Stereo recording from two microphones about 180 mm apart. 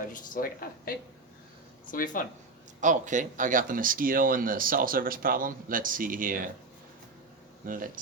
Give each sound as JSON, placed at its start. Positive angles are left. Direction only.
{"t": 0.1, "sound": "speech", "side_deg": 50}
{"t": 2.8, "sound": "speech", "side_deg": -45}
{"t": 7.6, "sound": "speech", "side_deg": -50}